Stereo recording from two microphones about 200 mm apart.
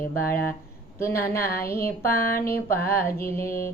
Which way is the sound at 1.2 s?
10° left (ahead or behind).